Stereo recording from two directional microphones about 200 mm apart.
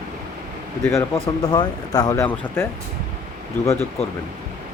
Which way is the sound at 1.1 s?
20° left (ahead or behind).